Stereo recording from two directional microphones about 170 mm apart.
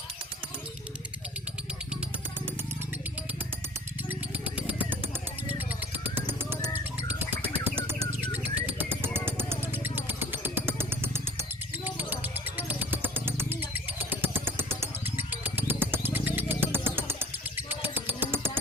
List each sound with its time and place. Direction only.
4.1 s vehicle: 10° right (ahead or behind)
5.5 s a sound: 10° right (ahead or behind)
7.1 s music: 10° right (ahead or behind)
8.8 s vehicle: 10° right (ahead or behind)
11.9 s music: 10° right (ahead or behind)
17.7 s a sound: 10° right (ahead or behind)